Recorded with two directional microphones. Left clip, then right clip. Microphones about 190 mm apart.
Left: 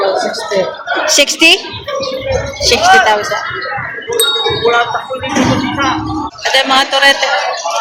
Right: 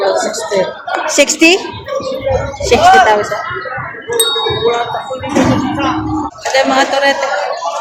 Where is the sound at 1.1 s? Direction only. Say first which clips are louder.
Left 1 dB; 10° right (ahead or behind).